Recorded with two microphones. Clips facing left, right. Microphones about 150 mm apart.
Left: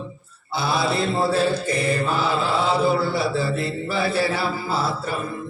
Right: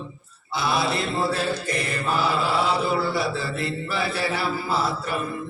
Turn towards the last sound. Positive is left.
turn(degrees=30)  # may be behind; listen again after turning